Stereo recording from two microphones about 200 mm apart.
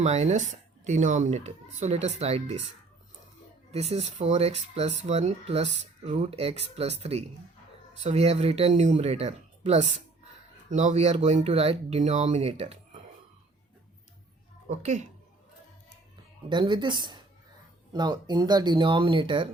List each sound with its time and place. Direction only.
0.0 s speech: 35° right (ahead or behind)
3.7 s speech: 30° right (ahead or behind)
14.7 s speech: 35° right (ahead or behind)
16.5 s speech: 25° right (ahead or behind)